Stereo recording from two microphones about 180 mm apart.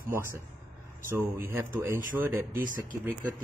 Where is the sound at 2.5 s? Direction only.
50° right (ahead or behind).